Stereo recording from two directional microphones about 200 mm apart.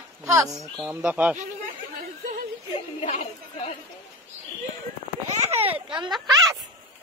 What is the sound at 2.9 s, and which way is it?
Speech, 35° left (ahead or behind).